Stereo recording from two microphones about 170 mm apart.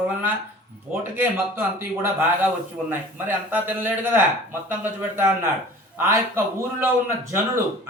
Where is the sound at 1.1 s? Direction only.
10° right (ahead or behind).